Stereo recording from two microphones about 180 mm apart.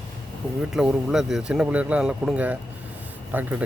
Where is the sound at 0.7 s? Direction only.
5° right (ahead or behind).